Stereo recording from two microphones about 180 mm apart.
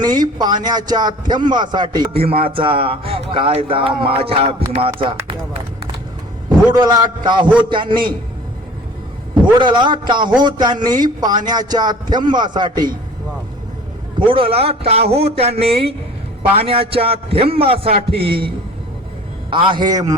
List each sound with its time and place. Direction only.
0.0 s speech: 25° right (ahead or behind)
6.7 s speech: 25° right (ahead or behind)
9.3 s a man's voice: 25° right (ahead or behind)
14.2 s speech: 30° right (ahead or behind)
19.5 s speech: 25° right (ahead or behind)